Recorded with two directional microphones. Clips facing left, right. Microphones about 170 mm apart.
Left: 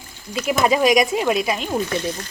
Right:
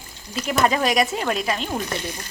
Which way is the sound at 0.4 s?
10° left (ahead or behind).